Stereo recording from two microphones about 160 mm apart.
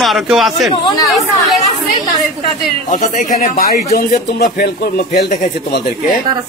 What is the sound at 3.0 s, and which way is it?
Speech, 50° left (ahead or behind).